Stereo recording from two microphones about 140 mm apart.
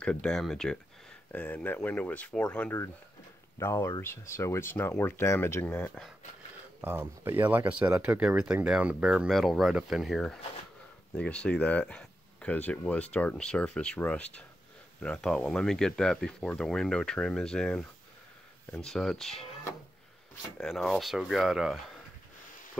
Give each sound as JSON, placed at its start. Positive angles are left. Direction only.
{"t": 0.0, "sound": "speech", "side_deg": 5}
{"t": 3.5, "sound": "speech", "side_deg": 20}
{"t": 6.8, "sound": "speech", "side_deg": -15}
{"t": 20.5, "sound": "speech", "side_deg": 5}